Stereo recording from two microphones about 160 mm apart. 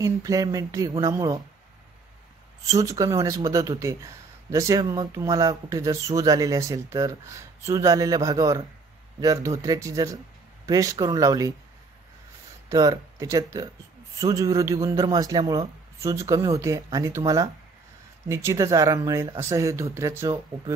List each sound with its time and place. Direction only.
0.0 s speech: 20° right (ahead or behind)
2.6 s speech: 20° right (ahead or behind)
12.6 s speech: 20° right (ahead or behind)